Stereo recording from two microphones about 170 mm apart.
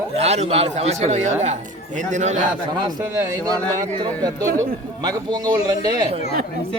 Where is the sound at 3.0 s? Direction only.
20° right (ahead or behind).